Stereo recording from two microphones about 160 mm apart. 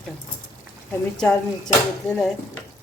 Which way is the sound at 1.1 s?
5° left (ahead or behind).